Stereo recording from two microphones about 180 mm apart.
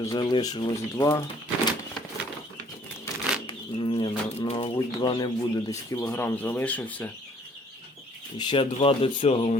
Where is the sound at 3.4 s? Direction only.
30° left (ahead or behind); by 7.1 s 10° left (ahead or behind).